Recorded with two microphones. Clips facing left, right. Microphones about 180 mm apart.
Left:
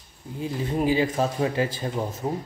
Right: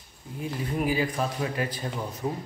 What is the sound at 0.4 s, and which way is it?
Speech, 25° left (ahead or behind).